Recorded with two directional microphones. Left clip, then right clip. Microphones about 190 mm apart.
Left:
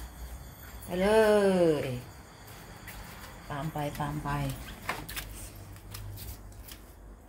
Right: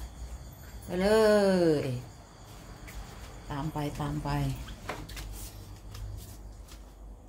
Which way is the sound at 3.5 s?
15° right (ahead or behind).